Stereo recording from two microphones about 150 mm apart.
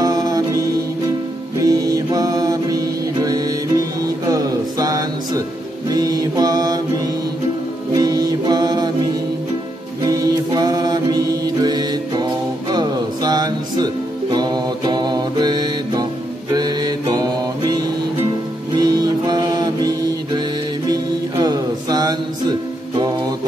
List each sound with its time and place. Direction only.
0.0 s music: 25° right (ahead or behind)
5.9 s mantra: 25° right (ahead or behind)
7.9 s music: 25° right (ahead or behind)
10.0 s mantra: 25° right (ahead or behind)
12.7 s music: 25° right (ahead or behind)
16.5 s mantra: 25° right (ahead or behind)
18.8 s music: 25° right (ahead or behind)
20.9 s music: 25° right (ahead or behind)